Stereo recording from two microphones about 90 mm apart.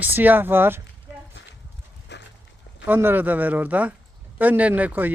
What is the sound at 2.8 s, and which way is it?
Speech, 20° right (ahead or behind).